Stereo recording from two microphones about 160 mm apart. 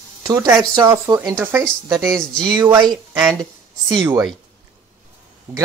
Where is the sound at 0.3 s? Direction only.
20° right (ahead or behind).